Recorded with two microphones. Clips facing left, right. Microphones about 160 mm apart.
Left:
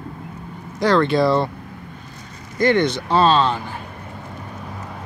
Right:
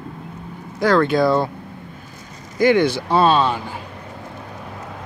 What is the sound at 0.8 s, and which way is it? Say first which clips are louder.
Speech: right 1 dB; centre (ahead or behind).